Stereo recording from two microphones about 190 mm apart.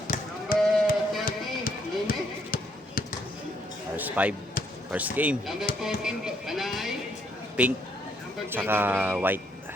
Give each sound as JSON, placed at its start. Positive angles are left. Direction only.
{"t": 0.1, "sound": "sheep", "side_deg": 50}
{"t": 1.2, "sound": "basketball bounce", "side_deg": 50}
{"t": 3.9, "sound": "basketball bounce", "side_deg": -10}
{"t": 4.9, "sound": "speech", "side_deg": -10}